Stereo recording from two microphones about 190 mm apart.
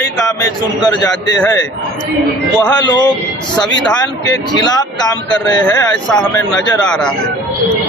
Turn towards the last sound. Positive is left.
turn(degrees=5)  # may be behind; listen again after turning